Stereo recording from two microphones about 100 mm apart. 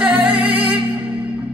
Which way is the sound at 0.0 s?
15° right (ahead or behind).